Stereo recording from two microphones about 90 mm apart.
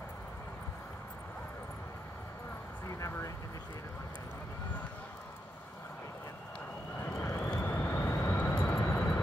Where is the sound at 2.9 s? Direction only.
35° left (ahead or behind).